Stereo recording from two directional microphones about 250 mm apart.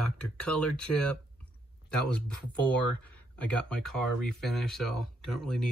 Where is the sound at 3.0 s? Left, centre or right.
Centre.